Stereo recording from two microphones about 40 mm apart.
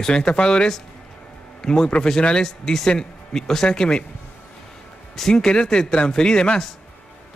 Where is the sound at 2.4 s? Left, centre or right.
Centre.